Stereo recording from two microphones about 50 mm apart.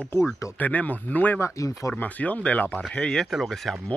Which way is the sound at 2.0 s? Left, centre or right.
Left.